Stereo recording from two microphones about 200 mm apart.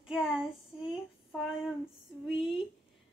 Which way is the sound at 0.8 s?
Centre (ahead or behind).